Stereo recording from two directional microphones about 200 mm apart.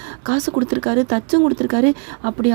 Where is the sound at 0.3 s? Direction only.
35° right (ahead or behind).